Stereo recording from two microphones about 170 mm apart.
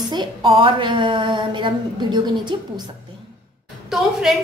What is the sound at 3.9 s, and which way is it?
Speech, 5° right (ahead or behind).